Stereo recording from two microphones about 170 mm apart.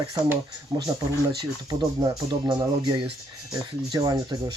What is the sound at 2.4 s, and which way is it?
Speech, 25° right (ahead or behind).